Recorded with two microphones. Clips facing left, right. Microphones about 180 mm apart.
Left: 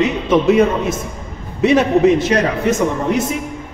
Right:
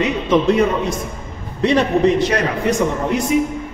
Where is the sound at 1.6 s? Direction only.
5° left (ahead or behind).